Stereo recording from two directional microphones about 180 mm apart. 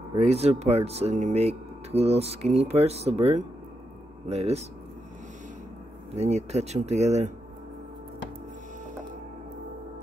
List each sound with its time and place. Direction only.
0.2 s speech: 35° right (ahead or behind)
6.1 s speech: 35° right (ahead or behind)